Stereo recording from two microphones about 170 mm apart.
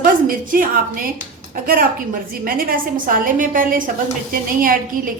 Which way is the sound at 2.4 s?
60° right (ahead or behind).